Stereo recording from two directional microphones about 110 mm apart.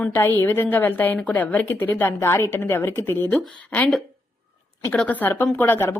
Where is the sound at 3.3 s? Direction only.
10° left (ahead or behind).